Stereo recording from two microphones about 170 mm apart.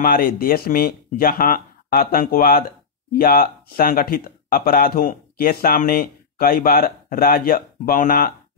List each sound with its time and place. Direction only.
0.0 s speech: 55° left (ahead or behind)